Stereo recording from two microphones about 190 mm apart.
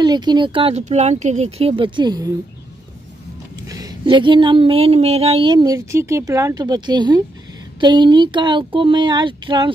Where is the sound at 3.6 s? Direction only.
20° right (ahead or behind).